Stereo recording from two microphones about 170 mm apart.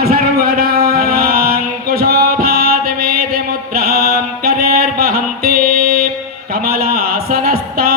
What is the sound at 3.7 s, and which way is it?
Music, 65° right (ahead or behind).